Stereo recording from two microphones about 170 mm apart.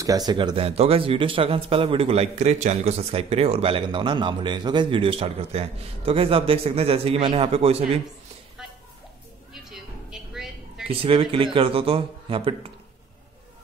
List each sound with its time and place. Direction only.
0.0 s speech: 20° right (ahead or behind); by 7.8 s 35° right (ahead or behind)
9.5 s a sound: centre (ahead or behind)
10.9 s speech: 35° right (ahead or behind)